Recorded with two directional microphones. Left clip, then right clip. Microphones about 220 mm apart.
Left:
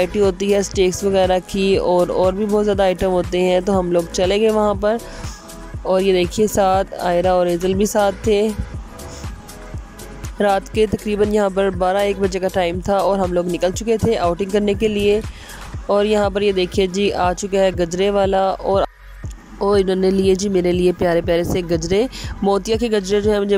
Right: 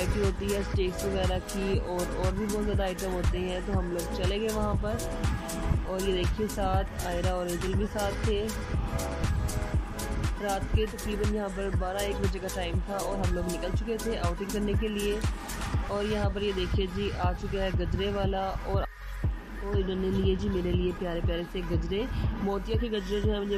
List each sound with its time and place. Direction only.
0.0 s speech: 50° left (ahead or behind)
10.4 s speech: 50° left (ahead or behind)